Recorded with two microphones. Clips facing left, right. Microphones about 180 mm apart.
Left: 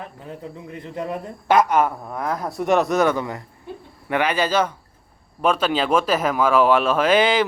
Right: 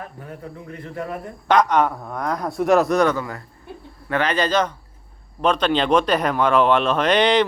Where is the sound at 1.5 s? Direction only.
5° left (ahead or behind).